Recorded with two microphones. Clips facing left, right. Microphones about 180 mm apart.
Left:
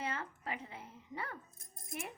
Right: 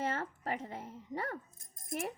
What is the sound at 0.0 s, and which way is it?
Speech, 45° right (ahead or behind).